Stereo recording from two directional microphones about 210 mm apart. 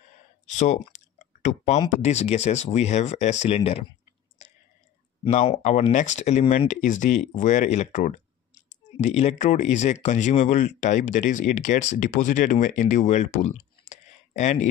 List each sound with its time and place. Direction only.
0.5 s speech: 35° left (ahead or behind)
5.2 s speech: 25° left (ahead or behind)